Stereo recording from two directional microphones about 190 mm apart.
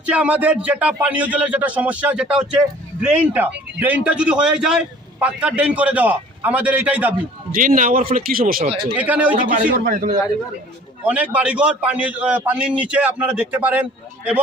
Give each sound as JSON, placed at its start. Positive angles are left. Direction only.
{"t": 0.0, "sound": "speech", "side_deg": -5}
{"t": 7.5, "sound": "speech", "side_deg": -45}
{"t": 9.0, "sound": "speech", "side_deg": -10}
{"t": 9.3, "sound": "speech", "side_deg": -45}
{"t": 11.0, "sound": "speech", "side_deg": -10}